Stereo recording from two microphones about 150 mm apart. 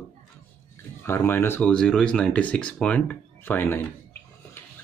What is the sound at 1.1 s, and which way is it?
Speech, 15° left (ahead or behind).